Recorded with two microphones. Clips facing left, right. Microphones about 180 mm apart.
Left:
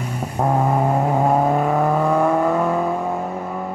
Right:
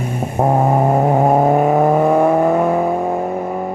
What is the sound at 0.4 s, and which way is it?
Vehicle, 25° right (ahead or behind).